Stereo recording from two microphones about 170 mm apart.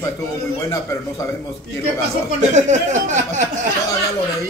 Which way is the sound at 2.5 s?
45° right (ahead or behind).